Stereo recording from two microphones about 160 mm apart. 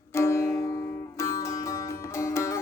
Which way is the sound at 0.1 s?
15° left (ahead or behind).